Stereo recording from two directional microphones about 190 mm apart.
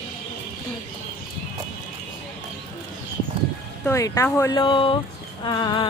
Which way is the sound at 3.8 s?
15° left (ahead or behind).